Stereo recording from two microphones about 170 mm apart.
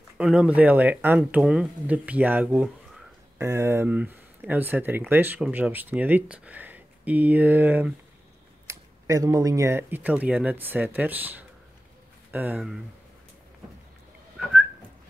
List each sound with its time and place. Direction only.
0.2 s speech: 5° right (ahead or behind)